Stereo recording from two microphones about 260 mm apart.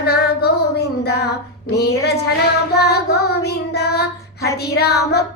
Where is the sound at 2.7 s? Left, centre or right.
Left.